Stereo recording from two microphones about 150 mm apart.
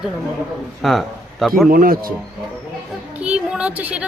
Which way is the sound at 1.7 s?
75° right (ahead or behind).